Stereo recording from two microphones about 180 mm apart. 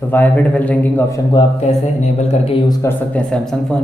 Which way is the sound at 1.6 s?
40° left (ahead or behind).